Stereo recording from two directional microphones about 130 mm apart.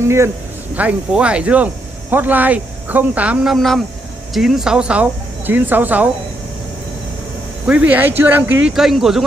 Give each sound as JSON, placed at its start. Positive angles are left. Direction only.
{"t": 0.0, "sound": "speech", "side_deg": -20}
{"t": 0.7, "sound": "speech", "side_deg": -10}
{"t": 3.5, "sound": "a man's voice", "side_deg": 0}
{"t": 7.6, "sound": "speech", "side_deg": -10}